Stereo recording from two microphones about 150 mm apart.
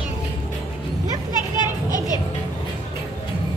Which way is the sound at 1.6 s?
25° left (ahead or behind).